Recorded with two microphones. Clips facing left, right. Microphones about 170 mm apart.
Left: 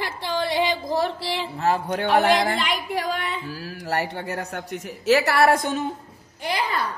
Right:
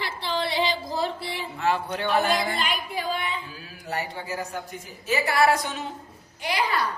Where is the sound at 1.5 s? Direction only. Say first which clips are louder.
Left 2 dB; 40° left (ahead or behind).